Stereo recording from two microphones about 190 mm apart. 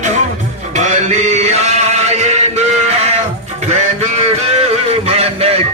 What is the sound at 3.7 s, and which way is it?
Music, 35° right (ahead or behind).